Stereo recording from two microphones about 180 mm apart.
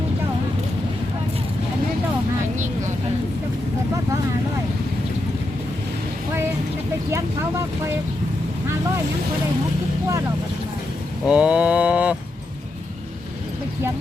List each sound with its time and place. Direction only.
7.1 s speech: 15° right (ahead or behind)
11.3 s mantra: 5° right (ahead or behind)